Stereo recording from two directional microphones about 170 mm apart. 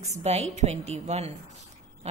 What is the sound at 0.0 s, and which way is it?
A woman's voice, 40° right (ahead or behind).